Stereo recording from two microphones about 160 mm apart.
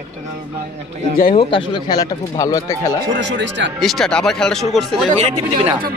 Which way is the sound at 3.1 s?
90° right.